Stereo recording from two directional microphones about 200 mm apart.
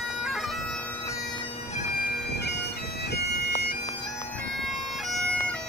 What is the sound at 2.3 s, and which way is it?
Bagpipes, 55° left (ahead or behind).